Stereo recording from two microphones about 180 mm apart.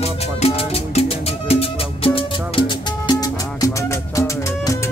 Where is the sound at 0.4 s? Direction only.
35° left (ahead or behind).